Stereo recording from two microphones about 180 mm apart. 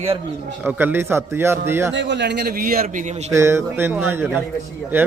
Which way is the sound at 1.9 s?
75° right (ahead or behind).